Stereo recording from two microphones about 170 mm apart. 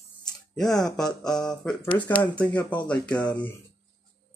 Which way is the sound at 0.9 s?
5° left (ahead or behind).